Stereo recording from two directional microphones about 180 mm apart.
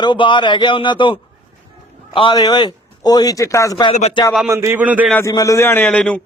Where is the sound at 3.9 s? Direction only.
35° left (ahead or behind).